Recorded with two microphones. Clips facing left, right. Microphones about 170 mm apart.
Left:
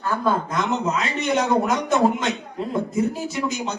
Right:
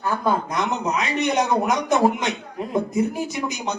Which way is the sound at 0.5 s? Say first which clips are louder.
Left 1 dB; 15° right (ahead or behind).